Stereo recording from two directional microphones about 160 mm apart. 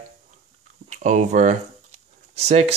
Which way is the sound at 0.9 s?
50° right (ahead or behind).